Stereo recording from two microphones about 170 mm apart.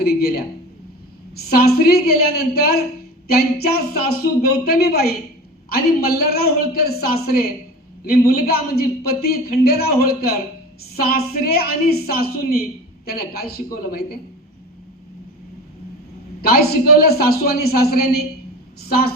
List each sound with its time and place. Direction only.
0.0 s a man's voice: 65° left (ahead or behind)
16.4 s a man's voice: 65° left (ahead or behind)